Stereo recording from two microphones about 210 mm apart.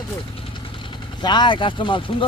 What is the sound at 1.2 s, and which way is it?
Speech, 20° left (ahead or behind).